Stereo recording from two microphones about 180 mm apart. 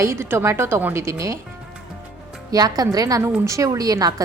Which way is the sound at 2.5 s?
20° right (ahead or behind).